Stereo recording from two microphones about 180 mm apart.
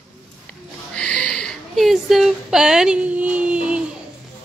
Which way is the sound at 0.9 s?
5° left (ahead or behind).